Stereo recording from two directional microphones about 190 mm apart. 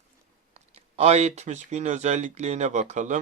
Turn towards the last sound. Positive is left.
turn(degrees=-40)  # may be behind; listen again after turning